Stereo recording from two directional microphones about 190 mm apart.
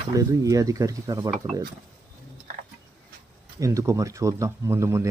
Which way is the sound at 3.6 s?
15° right (ahead or behind).